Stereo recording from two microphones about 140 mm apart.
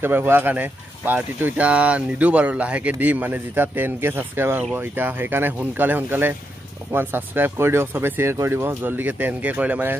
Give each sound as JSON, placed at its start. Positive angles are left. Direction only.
{"t": 0.0, "sound": "speech", "side_deg": -15}